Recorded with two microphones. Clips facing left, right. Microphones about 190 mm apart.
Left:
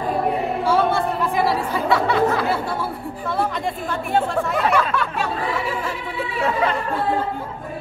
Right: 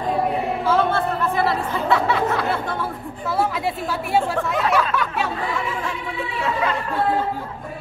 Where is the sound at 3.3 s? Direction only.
5° right (ahead or behind).